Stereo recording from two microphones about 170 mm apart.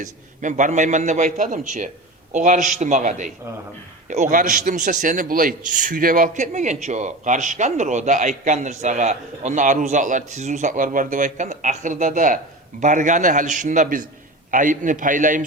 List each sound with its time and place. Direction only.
0.0 s a man's voice: 45° right (ahead or behind)